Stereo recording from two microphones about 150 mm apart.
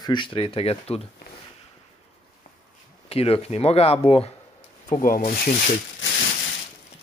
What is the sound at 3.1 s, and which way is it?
Speech, 40° left (ahead or behind).